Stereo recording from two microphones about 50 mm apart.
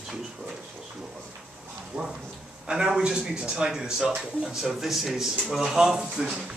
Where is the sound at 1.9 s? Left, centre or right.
Right.